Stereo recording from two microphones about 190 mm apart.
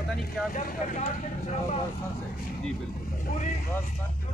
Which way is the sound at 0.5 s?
45° left (ahead or behind).